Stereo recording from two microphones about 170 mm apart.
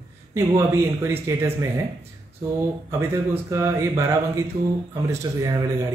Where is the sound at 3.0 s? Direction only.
15° right (ahead or behind).